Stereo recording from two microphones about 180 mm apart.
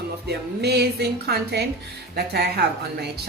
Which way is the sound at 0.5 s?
65° right (ahead or behind).